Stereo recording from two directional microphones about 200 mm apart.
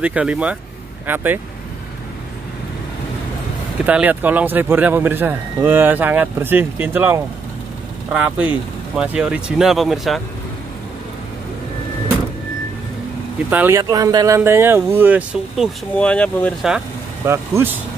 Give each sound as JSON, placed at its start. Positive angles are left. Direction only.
{"t": 0.0, "sound": "speech", "side_deg": -5}
{"t": 3.8, "sound": "speech", "side_deg": -10}
{"t": 13.5, "sound": "speech", "side_deg": -10}
{"t": 17.2, "sound": "speech", "side_deg": -10}